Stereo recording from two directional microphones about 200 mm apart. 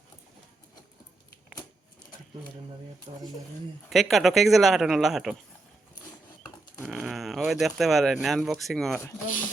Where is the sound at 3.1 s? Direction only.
25° right (ahead or behind).